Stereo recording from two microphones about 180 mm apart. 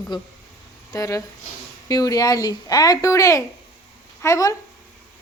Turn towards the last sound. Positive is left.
turn(degrees=15)  # may be behind; listen again after turning